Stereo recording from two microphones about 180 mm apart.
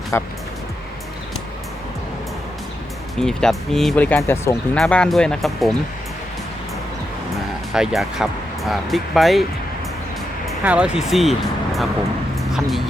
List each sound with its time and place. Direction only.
0.1 s speech: 15° left (ahead or behind)
3.2 s speech: 5° left (ahead or behind)
7.7 s speech: centre (ahead or behind)